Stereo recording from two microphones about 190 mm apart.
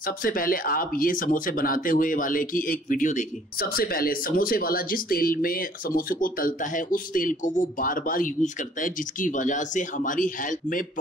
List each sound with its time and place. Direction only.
0.0 s speech: 45° left (ahead or behind)